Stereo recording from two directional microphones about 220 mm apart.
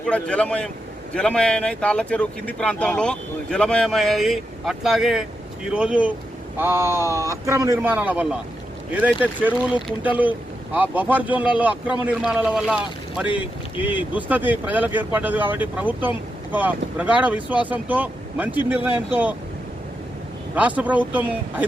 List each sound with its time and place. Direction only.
0.0 s speech: 5° left (ahead or behind)
13.3 s speech: 25° left (ahead or behind)
13.8 s speech: 5° right (ahead or behind)
20.6 s speech: 5° right (ahead or behind)